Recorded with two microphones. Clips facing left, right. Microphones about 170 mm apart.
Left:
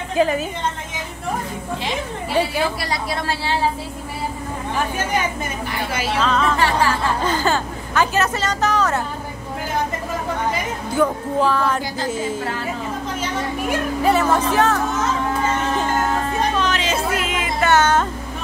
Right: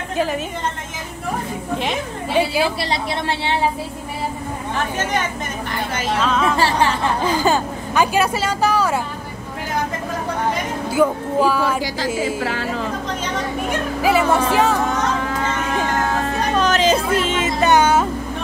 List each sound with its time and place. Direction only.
0.1 s a woman's voice: centre (ahead or behind)
2.8 s speech: 25° right (ahead or behind)
6.1 s music: 5° right (ahead or behind)
6.5 s speech: 25° right (ahead or behind)
7.2 s a woman's voice: 15° right (ahead or behind)
10.9 s a woman's voice: 10° right (ahead or behind)
12.4 s a woman's voice: 90° right
14.0 s a woman's voice: 10° right (ahead or behind)
16.5 s music: 40° right (ahead or behind); by 18.0 s 10° right (ahead or behind)